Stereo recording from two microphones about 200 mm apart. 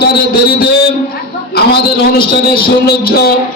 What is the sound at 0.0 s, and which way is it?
A man's voice, 50° left (ahead or behind).